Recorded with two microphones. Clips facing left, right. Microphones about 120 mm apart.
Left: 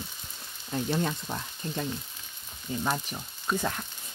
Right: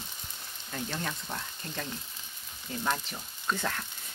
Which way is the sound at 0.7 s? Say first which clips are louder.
Left 7 dB; 25° left (ahead or behind).